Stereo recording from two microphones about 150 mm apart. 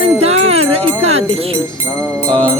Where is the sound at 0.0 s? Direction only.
45° right (ahead or behind).